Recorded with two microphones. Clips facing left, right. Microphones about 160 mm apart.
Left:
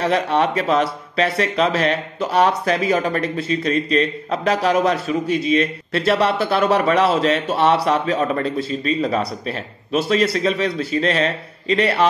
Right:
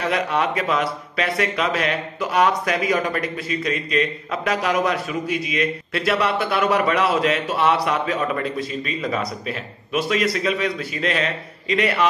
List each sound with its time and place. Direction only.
0.0 s speech: 30° left (ahead or behind)